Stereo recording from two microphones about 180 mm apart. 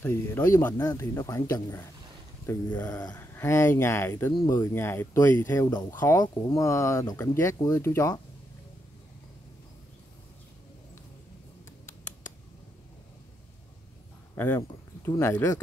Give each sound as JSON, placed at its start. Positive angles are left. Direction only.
{"t": 0.0, "sound": "speech", "side_deg": 10}
{"t": 14.3, "sound": "a sound", "side_deg": 10}
{"t": 15.0, "sound": "speech", "side_deg": 15}